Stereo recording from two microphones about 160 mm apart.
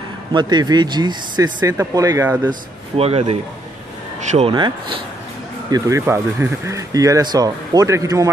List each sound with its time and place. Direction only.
0.3 s speech: 25° right (ahead or behind); by 2.5 s 10° right (ahead or behind)
3.0 s speech: 40° right (ahead or behind)
5.7 s speech: 20° right (ahead or behind)